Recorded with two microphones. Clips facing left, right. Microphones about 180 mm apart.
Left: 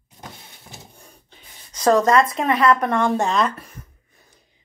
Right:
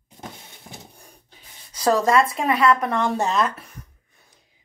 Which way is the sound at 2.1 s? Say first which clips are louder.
Left 2 dB; 5° right (ahead or behind).